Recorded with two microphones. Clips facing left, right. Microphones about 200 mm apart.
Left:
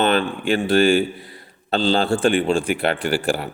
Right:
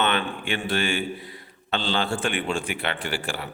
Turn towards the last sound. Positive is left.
turn(degrees=40)  # may be behind; listen again after turning